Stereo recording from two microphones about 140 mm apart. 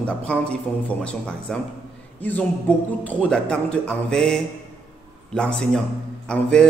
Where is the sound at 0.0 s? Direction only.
10° left (ahead or behind).